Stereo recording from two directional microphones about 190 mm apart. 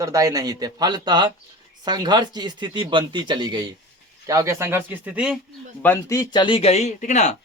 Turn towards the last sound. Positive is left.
turn(degrees=40)  # may be behind; listen again after turning